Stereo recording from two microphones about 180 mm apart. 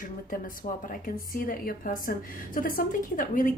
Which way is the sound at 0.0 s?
50° left (ahead or behind).